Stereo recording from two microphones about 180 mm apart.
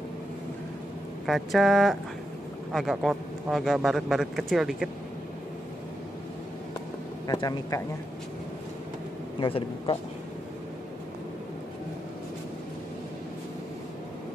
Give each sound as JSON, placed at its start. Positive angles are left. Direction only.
{"t": 1.2, "sound": "a man's voice", "side_deg": 0}
{"t": 7.2, "sound": "speech", "side_deg": 20}
{"t": 9.4, "sound": "speech", "side_deg": 30}